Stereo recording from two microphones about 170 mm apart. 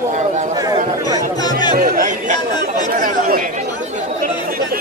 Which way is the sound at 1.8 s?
55° right (ahead or behind).